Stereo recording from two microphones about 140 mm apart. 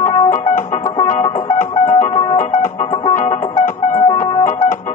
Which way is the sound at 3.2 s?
65° left (ahead or behind).